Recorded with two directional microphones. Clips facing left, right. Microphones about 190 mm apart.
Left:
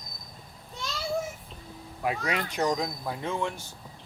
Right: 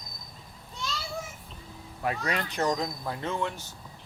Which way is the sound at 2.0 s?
10° left (ahead or behind).